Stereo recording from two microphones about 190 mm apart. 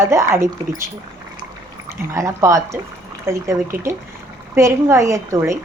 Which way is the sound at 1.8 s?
15° right (ahead or behind).